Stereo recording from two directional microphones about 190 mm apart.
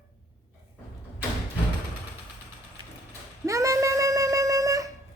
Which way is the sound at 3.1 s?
15° right (ahead or behind).